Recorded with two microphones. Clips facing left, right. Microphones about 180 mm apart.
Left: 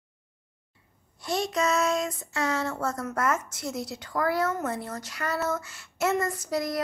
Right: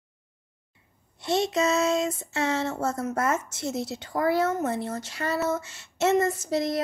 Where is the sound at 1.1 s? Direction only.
25° right (ahead or behind).